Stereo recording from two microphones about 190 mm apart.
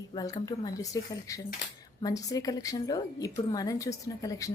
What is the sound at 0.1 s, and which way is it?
Speech, 20° left (ahead or behind).